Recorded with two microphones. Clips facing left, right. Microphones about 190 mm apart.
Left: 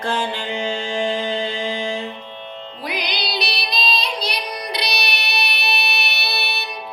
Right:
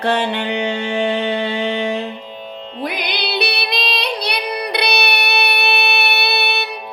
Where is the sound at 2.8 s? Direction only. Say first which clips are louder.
Right 4 dB; 55° right (ahead or behind).